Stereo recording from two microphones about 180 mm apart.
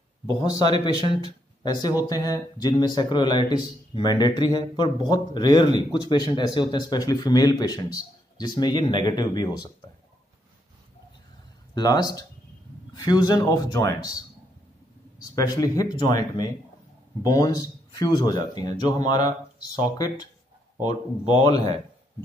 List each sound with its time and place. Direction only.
0.3 s speech: 20° left (ahead or behind)
11.7 s speech: 20° left (ahead or behind)
15.1 s speech: 20° left (ahead or behind)